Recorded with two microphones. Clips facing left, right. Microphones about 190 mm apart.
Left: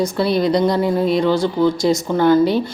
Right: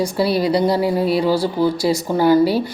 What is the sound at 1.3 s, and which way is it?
Speech, 35° right (ahead or behind).